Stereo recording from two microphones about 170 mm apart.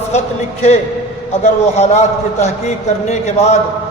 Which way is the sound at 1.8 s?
40° left (ahead or behind).